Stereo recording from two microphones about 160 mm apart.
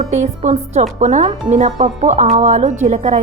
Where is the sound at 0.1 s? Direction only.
45° right (ahead or behind).